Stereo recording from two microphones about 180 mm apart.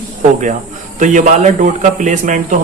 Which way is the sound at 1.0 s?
45° right (ahead or behind).